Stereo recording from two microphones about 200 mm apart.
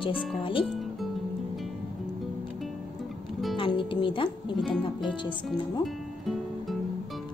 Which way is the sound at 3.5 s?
25° left (ahead or behind).